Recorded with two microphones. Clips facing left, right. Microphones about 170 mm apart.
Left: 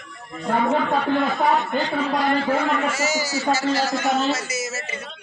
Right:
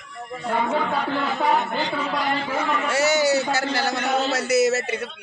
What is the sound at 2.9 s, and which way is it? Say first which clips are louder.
A man's voice: right 5 dB; 65° right (ahead or behind).